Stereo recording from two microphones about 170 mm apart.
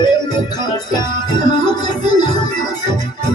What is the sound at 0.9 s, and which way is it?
Music, 25° left (ahead or behind).